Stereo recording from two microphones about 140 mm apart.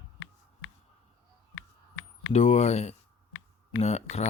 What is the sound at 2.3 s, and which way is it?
Speech, 50° left (ahead or behind).